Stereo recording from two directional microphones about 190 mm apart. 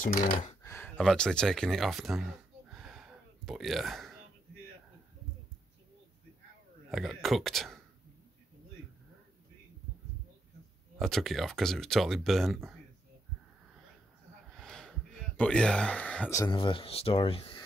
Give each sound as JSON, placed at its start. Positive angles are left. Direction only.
{"t": 0.0, "sound": "speech", "side_deg": 45}
{"t": 0.6, "sound": "a sound", "side_deg": 15}
{"t": 6.9, "sound": "speech", "side_deg": 0}
{"t": 11.0, "sound": "speech", "side_deg": 0}
{"t": 14.6, "sound": "a sound", "side_deg": 5}
{"t": 16.5, "sound": "speech", "side_deg": 25}